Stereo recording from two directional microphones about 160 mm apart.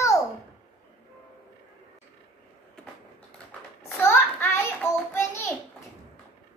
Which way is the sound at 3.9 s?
15° left (ahead or behind).